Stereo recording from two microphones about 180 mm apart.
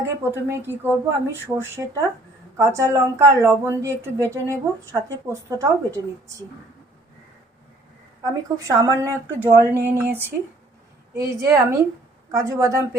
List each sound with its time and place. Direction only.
0.0 s speech: 15° right (ahead or behind)
8.2 s speech: 20° right (ahead or behind)